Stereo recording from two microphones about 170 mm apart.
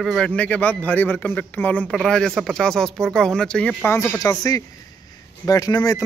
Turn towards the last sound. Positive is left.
turn(degrees=20)  # may be behind; listen again after turning